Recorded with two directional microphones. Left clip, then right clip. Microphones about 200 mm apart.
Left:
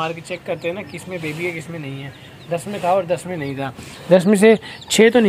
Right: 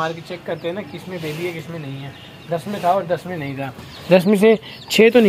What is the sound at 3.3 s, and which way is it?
Speech, 20° left (ahead or behind).